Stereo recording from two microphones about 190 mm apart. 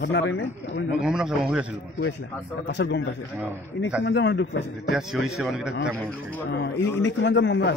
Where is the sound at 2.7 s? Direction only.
65° left (ahead or behind).